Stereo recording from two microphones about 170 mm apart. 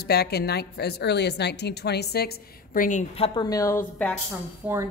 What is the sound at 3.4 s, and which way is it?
Speech, 20° left (ahead or behind).